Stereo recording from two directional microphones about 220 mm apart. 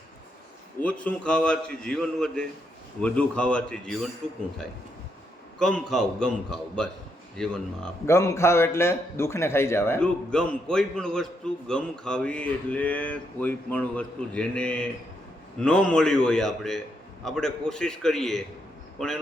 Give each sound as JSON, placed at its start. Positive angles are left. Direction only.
{"t": 0.8, "sound": "speech", "side_deg": 5}
{"t": 5.5, "sound": "a man's voice", "side_deg": 5}